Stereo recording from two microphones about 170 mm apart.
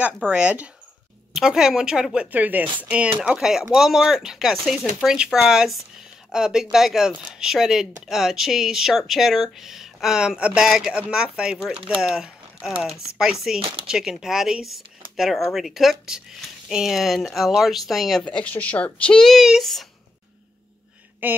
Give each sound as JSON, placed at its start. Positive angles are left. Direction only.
{"t": 0.3, "sound": "speech", "side_deg": -5}
{"t": 13.6, "sound": "speech", "side_deg": -30}
{"t": 13.8, "sound": "speech", "side_deg": -5}
{"t": 21.2, "sound": "speech", "side_deg": -10}